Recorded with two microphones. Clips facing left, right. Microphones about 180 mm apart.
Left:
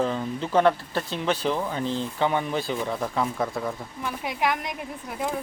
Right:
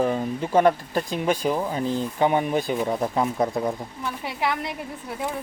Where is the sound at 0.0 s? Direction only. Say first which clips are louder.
Right 3 dB; 15° right (ahead or behind).